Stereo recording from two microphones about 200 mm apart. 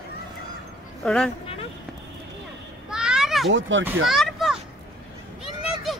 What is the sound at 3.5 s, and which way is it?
Speech, 70° right (ahead or behind).